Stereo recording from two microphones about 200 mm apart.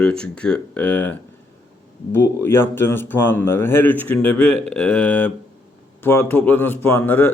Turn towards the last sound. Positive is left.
turn(degrees=10)  # may be behind; listen again after turning